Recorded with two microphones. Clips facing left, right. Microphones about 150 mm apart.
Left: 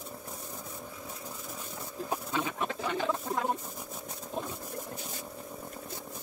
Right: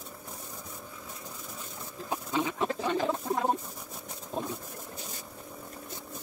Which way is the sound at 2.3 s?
25° right (ahead or behind).